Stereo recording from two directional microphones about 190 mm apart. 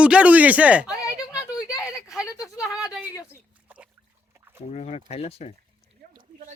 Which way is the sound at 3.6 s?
5° right (ahead or behind).